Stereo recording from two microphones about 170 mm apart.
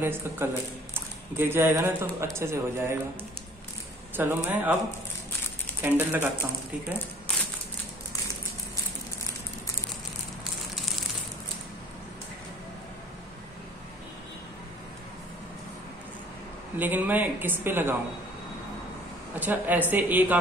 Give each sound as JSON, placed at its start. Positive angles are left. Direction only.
{"t": 0.0, "sound": "a woman's voice", "side_deg": -15}
{"t": 4.2, "sound": "a woman's voice", "side_deg": -10}
{"t": 5.8, "sound": "a woman's voice", "side_deg": -10}
{"t": 16.7, "sound": "a woman's voice", "side_deg": -10}
{"t": 19.4, "sound": "a woman's voice", "side_deg": -10}